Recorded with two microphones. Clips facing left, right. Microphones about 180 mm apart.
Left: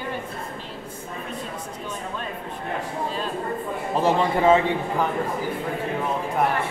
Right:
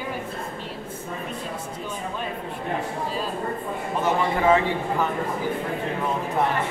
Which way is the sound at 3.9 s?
30° left (ahead or behind).